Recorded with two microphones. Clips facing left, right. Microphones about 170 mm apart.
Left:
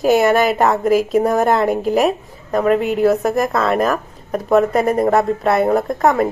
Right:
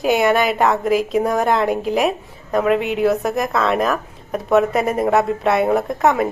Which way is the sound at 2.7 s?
40° left (ahead or behind).